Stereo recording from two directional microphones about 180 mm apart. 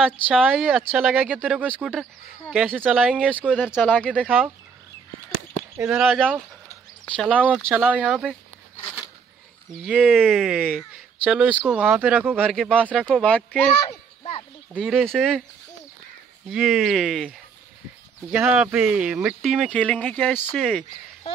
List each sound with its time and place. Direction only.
0.3 s speech: 5° right (ahead or behind)
3.8 s speech: 5° left (ahead or behind)
5.8 s speech: 5° right (ahead or behind)
9.8 s a child's voice: 5° right (ahead or behind)
13.8 s a sound: 35° left (ahead or behind)
14.8 s speech: centre (ahead or behind)
16.4 s speech: centre (ahead or behind)